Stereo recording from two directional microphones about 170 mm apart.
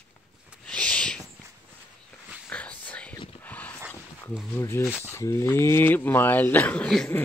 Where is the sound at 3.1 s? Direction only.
30° left (ahead or behind).